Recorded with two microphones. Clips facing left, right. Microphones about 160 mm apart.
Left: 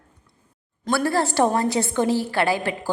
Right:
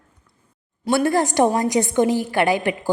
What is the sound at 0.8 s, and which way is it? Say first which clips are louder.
A woman's voice: right 3 dB; 20° right (ahead or behind).